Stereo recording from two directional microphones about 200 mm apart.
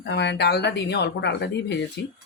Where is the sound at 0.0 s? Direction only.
60° left (ahead or behind).